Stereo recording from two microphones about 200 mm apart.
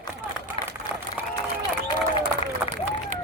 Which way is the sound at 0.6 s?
30° left (ahead or behind).